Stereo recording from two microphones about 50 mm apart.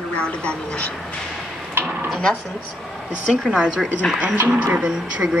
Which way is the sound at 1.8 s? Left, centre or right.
Right.